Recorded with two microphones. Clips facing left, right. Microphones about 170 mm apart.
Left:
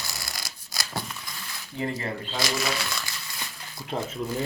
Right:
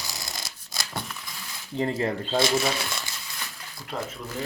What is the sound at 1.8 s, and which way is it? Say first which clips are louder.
Speech: right 4 dB; 30° right (ahead or behind).